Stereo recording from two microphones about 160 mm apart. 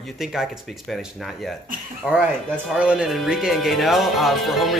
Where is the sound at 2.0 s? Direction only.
5° right (ahead or behind).